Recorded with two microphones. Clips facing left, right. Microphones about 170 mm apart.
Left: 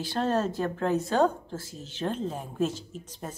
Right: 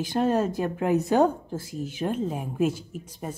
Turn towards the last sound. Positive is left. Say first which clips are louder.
# right 4 dB
turn(degrees=-10)  # may be behind; listen again after turning